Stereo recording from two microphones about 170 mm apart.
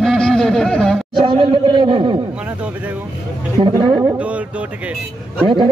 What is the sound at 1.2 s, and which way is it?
Speech, 30° right (ahead or behind).